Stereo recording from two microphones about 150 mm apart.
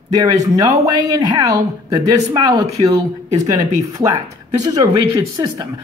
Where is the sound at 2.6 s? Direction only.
45° right (ahead or behind).